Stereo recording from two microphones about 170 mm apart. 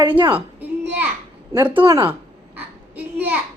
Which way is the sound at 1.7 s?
25° right (ahead or behind).